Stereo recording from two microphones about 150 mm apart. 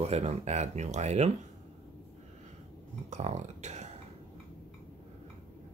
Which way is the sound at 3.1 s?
50° right (ahead or behind).